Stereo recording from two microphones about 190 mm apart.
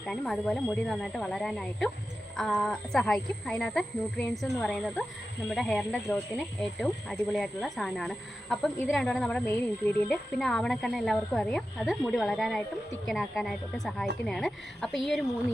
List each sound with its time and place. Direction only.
0.0 s speech: 5° left (ahead or behind)